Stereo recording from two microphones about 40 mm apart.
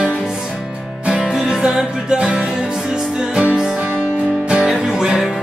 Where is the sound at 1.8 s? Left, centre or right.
Right.